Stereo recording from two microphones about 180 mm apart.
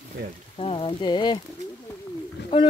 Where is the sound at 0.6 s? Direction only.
30° left (ahead or behind).